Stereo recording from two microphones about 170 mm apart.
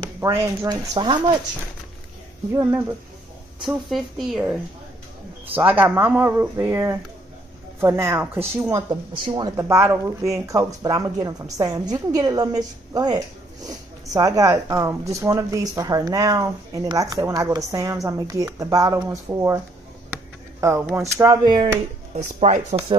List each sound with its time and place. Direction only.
0.2 s speech: 20° right (ahead or behind)
2.5 s speech: 15° right (ahead or behind)
3.6 s speech: centre (ahead or behind); by 8.8 s 15° right (ahead or behind)
9.2 s speech: 30° right (ahead or behind)
9.6 s speech: 15° right (ahead or behind)
20.9 s speech: 15° right (ahead or behind)
22.1 s speech: 40° right (ahead or behind)